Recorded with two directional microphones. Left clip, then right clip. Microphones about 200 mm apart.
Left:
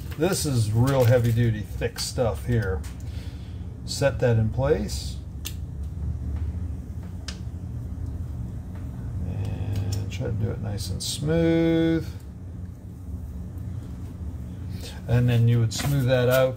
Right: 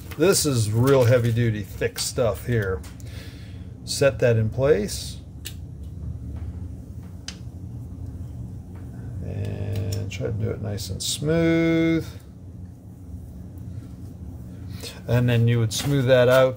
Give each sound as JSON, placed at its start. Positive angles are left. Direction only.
{"t": 0.2, "sound": "speech", "side_deg": -50}
{"t": 3.8, "sound": "speech", "side_deg": -50}
{"t": 10.7, "sound": "speech", "side_deg": -50}
{"t": 14.8, "sound": "speech", "side_deg": -50}